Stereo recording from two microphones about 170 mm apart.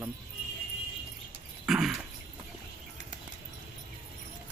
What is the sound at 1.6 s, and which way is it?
Cough, 5° right (ahead or behind).